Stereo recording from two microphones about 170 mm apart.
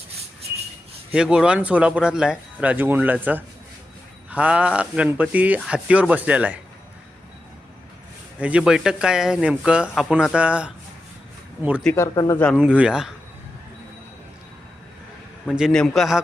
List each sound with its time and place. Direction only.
1.1 s speech: 5° right (ahead or behind)
8.4 s speech: 5° right (ahead or behind)
11.9 s speech: 20° left (ahead or behind)
12.5 s speech: 5° right (ahead or behind)
15.4 s speech: centre (ahead or behind)